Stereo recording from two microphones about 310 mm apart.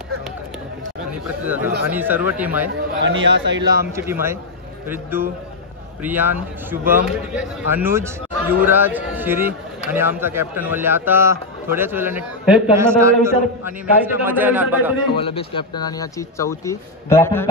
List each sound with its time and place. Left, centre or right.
1.1 s speech: centre
2.7 s a man's voice: right
3.9 s a man's voice: centre
15.1 s speech: centre